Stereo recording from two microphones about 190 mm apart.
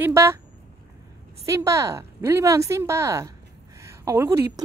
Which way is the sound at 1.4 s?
15° right (ahead or behind).